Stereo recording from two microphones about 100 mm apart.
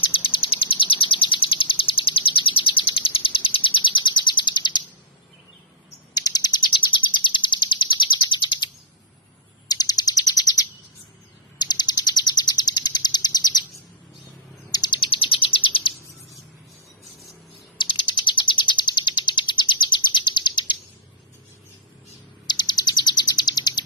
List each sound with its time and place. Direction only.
0.0 s bird: 60° left (ahead or behind)
6.3 s bird: 45° left (ahead or behind)
9.6 s bird: 40° left (ahead or behind)
14.7 s bird: 45° left (ahead or behind)
17.7 s bird: 50° left (ahead or behind)
22.4 s bird: 45° left (ahead or behind)